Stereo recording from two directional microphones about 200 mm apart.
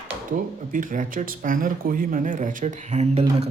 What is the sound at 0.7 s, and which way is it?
Speech, 40° right (ahead or behind).